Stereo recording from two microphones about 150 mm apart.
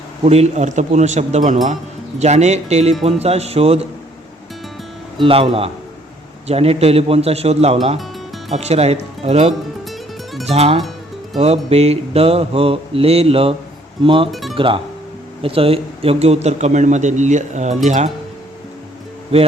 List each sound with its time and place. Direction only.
0.3 s speech: 45° right (ahead or behind)
5.2 s mantra: 40° right (ahead or behind)
6.5 s speech: 40° right (ahead or behind)
10.4 s music: 45° right (ahead or behind)
11.3 s mantra: 45° right (ahead or behind)
14.3 s speech: centre (ahead or behind)
14.5 s speech: 35° right (ahead or behind)